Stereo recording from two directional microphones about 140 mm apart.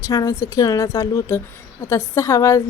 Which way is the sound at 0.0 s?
25° left (ahead or behind).